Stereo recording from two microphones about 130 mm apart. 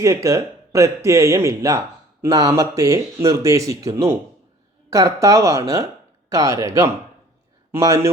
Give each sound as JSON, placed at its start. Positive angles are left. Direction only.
{"t": 0.0, "sound": "speech", "side_deg": -25}